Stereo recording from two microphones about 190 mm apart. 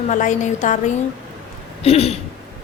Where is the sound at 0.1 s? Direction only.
40° left (ahead or behind).